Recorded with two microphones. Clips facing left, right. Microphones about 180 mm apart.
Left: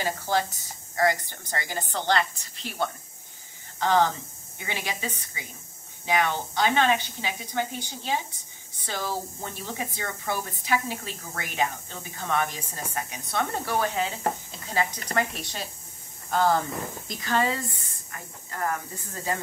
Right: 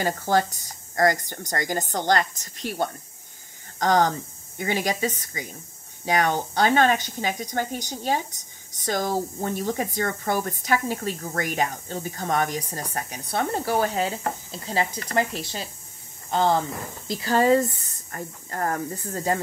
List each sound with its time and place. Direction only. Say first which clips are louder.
0.0 s speech: right 4 dB; 45° right (ahead or behind); by 16.5 s 25° right (ahead or behind)
17.1 s speech: right 8 dB; 35° right (ahead or behind)